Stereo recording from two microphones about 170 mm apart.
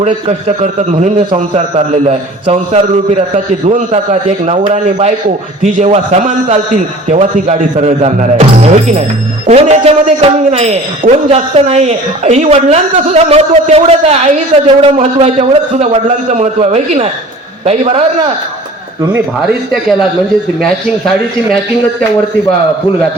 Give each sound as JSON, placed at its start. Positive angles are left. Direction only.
{"t": 0.0, "sound": "a man's voice", "side_deg": -40}
{"t": 19.7, "sound": "speech", "side_deg": 0}